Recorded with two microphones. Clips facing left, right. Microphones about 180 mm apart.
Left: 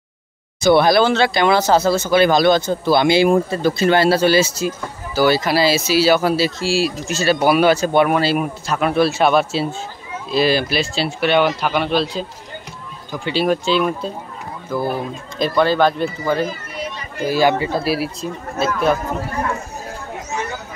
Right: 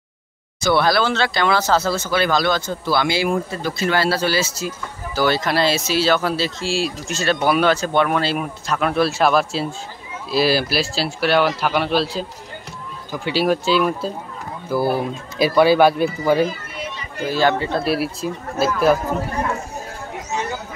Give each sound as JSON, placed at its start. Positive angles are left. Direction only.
{"t": 0.6, "sound": "speech", "side_deg": 20}
{"t": 5.1, "sound": "speech", "side_deg": 5}
{"t": 17.2, "sound": "speech", "side_deg": 10}